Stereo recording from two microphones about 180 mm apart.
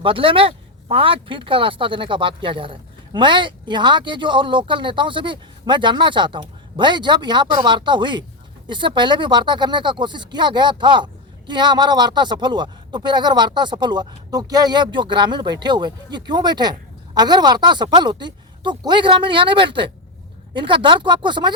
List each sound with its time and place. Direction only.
0.0 s speech: 30° right (ahead or behind)